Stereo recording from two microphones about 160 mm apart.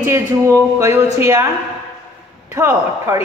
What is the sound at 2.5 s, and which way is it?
Speech, 15° right (ahead or behind).